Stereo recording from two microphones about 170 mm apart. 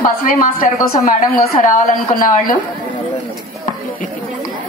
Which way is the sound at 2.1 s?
55° left (ahead or behind).